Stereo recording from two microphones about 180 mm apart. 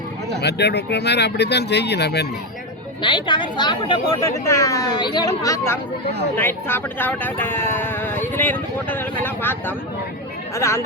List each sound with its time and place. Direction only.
0.4 s speech: 65° left (ahead or behind)
3.0 s speech: 25° left (ahead or behind)